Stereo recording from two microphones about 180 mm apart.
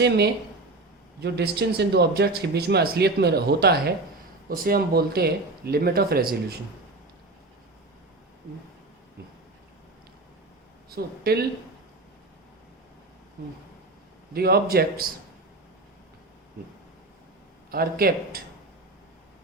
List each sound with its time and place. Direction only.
1.2 s speech: 65° right (ahead or behind)
10.8 s speech: 55° right (ahead or behind)
14.3 s speech: 60° right (ahead or behind)
17.7 s speech: 55° right (ahead or behind)